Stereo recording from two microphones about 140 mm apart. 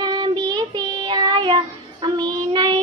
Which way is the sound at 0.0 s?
30° right (ahead or behind).